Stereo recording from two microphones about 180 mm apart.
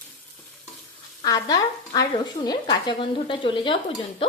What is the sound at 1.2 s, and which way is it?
Speech, 20° left (ahead or behind).